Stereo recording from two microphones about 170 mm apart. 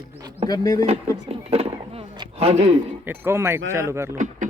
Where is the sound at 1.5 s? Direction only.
40° right (ahead or behind).